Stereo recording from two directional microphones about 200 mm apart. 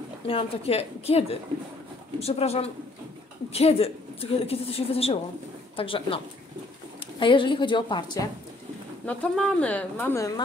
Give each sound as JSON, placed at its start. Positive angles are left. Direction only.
{"t": 0.3, "sound": "a woman's voice", "side_deg": 30}
{"t": 9.0, "sound": "speech", "side_deg": 5}